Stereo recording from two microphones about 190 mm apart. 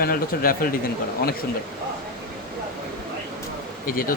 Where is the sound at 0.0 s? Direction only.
50° left (ahead or behind).